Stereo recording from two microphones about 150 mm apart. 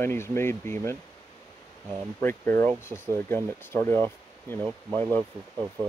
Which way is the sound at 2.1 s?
15° left (ahead or behind).